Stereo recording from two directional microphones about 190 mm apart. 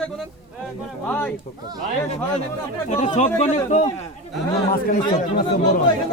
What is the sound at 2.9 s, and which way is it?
Speech, 40° left (ahead or behind).